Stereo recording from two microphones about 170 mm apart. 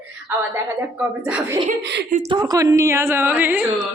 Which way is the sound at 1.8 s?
85° right.